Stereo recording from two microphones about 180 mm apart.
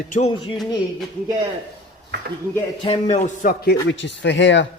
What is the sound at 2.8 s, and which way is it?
Speech, 35° left (ahead or behind).